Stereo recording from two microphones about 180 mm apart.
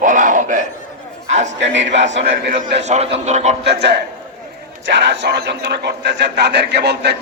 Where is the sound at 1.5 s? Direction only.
90° right.